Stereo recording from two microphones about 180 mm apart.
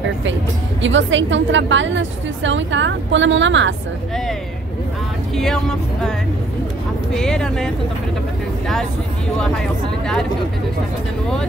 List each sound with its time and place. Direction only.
0.8 s a woman's voice: 90° right
5.3 s speech: centre (ahead or behind)
7.2 s speech: 5° left (ahead or behind)
9.4 s speech: 5° left (ahead or behind)